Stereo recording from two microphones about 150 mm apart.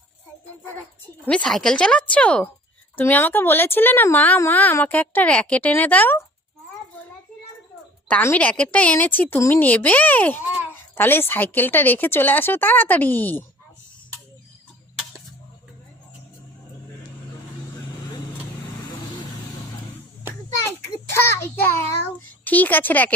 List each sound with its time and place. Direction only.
1.2 s a woman's voice: 5° left (ahead or behind)
8.0 s a woman's voice: 10° left (ahead or behind)
21.1 s a woman's voice: 15° left (ahead or behind)